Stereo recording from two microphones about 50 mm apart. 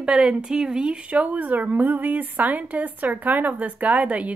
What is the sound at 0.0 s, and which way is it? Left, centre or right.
A woman's voice, right.